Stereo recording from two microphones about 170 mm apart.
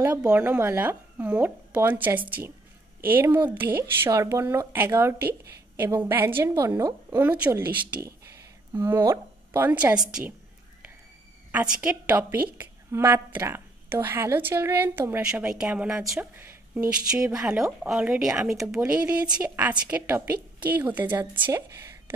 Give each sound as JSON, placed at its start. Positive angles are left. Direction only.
{"t": 0.0, "sound": "a woman's voice", "side_deg": -10}
{"t": 8.7, "sound": "a woman's voice", "side_deg": -15}
{"t": 11.5, "sound": "a woman's voice", "side_deg": -5}
{"t": 21.5, "sound": "a sound", "side_deg": -20}